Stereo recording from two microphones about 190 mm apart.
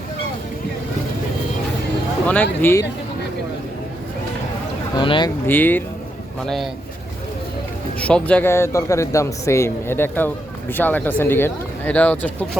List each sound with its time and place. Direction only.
2.2 s a man's voice: 10° left (ahead or behind)
4.9 s speech: 25° left (ahead or behind)
5.5 s a man's voice: 10° left (ahead or behind)
7.9 s a man's voice: 5° left (ahead or behind)